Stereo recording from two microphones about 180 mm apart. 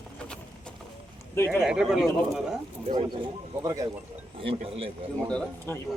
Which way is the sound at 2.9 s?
30° right (ahead or behind).